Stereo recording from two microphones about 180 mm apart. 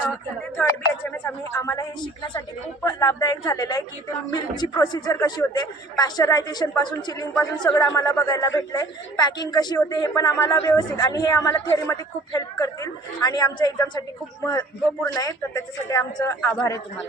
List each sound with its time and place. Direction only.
0.5 s a man's voice: 10° left (ahead or behind)
15.0 s speech: 15° left (ahead or behind)